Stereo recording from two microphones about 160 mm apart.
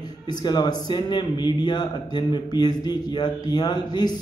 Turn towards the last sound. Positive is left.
turn(degrees=25)  # may be behind; listen again after turning